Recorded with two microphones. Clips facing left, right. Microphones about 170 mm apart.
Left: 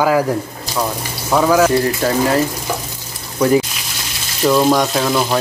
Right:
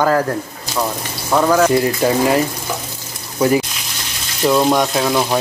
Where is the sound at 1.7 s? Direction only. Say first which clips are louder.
Right 1 dB; 15° right (ahead or behind).